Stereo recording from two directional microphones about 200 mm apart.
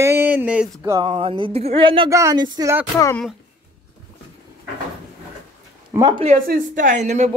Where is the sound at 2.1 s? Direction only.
20° right (ahead or behind).